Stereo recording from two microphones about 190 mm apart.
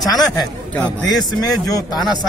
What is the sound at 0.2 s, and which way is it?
Speech, centre (ahead or behind).